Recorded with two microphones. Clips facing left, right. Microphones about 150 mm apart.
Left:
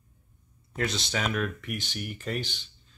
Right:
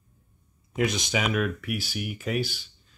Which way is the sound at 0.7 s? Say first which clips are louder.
Right 4 dB; 15° right (ahead or behind).